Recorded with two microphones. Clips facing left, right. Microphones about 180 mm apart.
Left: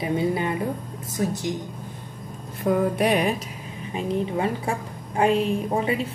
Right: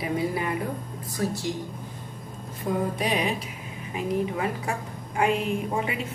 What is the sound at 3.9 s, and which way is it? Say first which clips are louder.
A woman's voice: left 1 dB; 30° left (ahead or behind).